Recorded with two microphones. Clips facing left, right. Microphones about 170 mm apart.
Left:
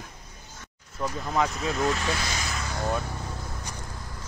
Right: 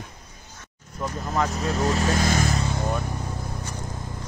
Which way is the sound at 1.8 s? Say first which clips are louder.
Right 6 dB; 40° right (ahead or behind).